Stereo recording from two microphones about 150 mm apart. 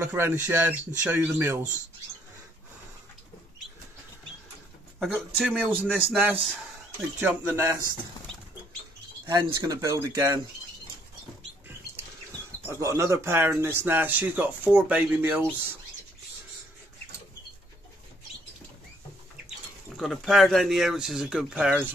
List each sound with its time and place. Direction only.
0.0 s speech: 15° right (ahead or behind)
5.0 s speech: centre (ahead or behind)
5.5 s speech: 10° right (ahead or behind)
9.6 s speech: 25° right (ahead or behind)
12.6 s speech: 20° right (ahead or behind)
20.0 s speech: centre (ahead or behind)